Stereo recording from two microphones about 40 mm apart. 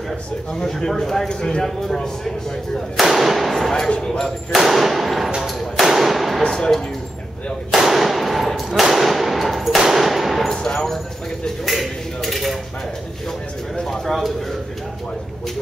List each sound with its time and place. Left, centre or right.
0.6 s a man's voice: centre
3.0 s speech: centre
3.9 s speech: left
4.5 s speech: centre
5.4 s thump: centre
6.4 s speech: centre
7.7 s speech: centre
10.5 s a man's voice: centre
11.6 s speech: centre
13.8 s speech: centre